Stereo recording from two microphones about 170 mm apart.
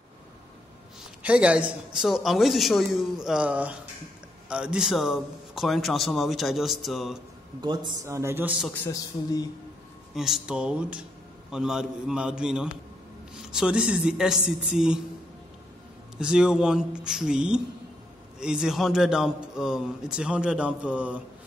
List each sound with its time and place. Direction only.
1.2 s a man's voice: 5° right (ahead or behind)
7.6 s a man's voice: 25° right (ahead or behind); by 8.7 s 5° right (ahead or behind)
8.8 s a man's voice: 20° left (ahead or behind)
10.1 s a man's voice: centre (ahead or behind)
16.2 s a man's voice: 5° right (ahead or behind)